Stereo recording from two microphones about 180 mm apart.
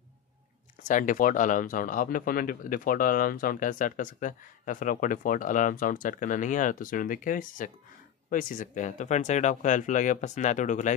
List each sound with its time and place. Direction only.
0.8 s speech: 45° left (ahead or behind)